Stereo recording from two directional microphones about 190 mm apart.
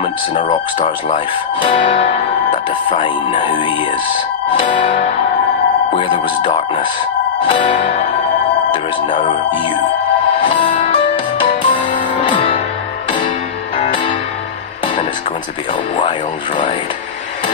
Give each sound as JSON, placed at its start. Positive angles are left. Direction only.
{"t": 0.3, "sound": "speech", "side_deg": 30}
{"t": 1.8, "sound": "music", "side_deg": 35}
{"t": 2.9, "sound": "speech", "side_deg": 25}
{"t": 4.6, "sound": "music", "side_deg": 40}
{"t": 5.9, "sound": "speech", "side_deg": 25}
{"t": 10.5, "sound": "music", "side_deg": 40}
{"t": 11.7, "sound": "music", "side_deg": 40}